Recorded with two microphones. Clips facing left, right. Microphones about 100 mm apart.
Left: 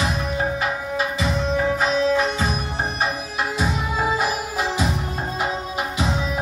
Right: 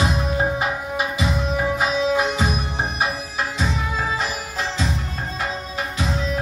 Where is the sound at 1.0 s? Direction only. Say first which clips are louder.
Even; 10° right (ahead or behind).